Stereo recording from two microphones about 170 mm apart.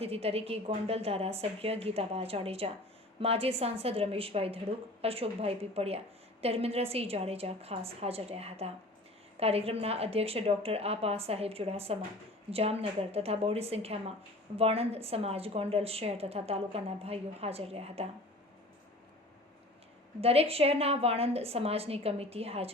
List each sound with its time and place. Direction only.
0.0 s a woman's voice: 35° right (ahead or behind)
20.2 s a woman's voice: 35° right (ahead or behind)